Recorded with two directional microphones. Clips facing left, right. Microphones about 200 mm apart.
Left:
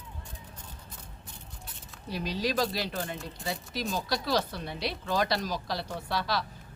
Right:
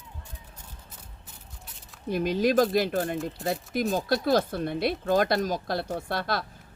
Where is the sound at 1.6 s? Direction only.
Centre (ahead or behind).